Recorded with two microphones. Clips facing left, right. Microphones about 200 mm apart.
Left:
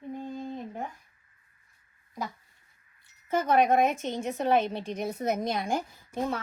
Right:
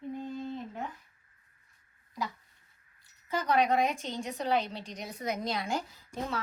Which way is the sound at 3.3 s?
50° left (ahead or behind).